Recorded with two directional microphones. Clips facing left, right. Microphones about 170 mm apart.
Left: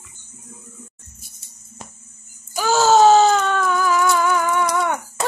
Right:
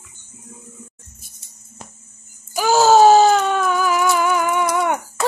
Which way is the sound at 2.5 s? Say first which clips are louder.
Right 2 dB; 15° right (ahead or behind).